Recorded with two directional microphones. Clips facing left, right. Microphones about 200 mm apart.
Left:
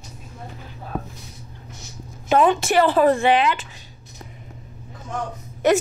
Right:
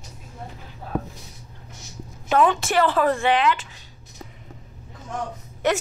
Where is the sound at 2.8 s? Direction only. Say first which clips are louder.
Left 5 dB; 25° left (ahead or behind).